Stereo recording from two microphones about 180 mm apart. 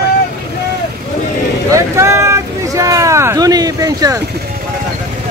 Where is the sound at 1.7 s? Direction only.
15° right (ahead or behind).